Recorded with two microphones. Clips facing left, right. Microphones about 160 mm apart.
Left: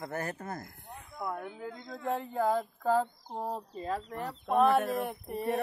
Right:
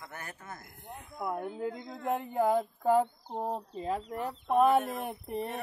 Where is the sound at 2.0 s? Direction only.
15° right (ahead or behind).